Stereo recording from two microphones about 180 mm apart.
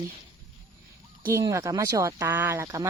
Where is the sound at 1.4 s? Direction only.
20° right (ahead or behind).